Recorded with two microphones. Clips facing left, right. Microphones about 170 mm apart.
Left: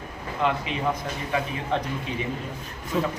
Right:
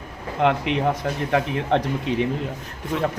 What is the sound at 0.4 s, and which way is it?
Speech, 70° right (ahead or behind).